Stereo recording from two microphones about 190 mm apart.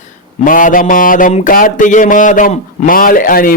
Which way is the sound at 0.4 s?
45° left (ahead or behind).